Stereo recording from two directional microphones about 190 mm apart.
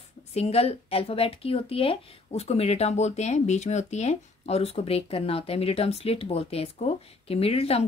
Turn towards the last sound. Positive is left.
turn(degrees=30)  # may be behind; listen again after turning